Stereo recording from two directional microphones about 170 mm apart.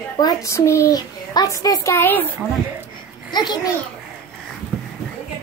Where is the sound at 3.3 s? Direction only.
25° left (ahead or behind).